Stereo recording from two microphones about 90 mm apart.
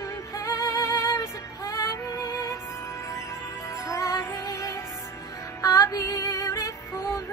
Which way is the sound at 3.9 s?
35° left (ahead or behind).